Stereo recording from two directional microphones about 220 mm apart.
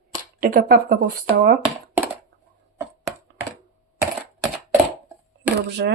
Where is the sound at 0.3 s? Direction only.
40° right (ahead or behind).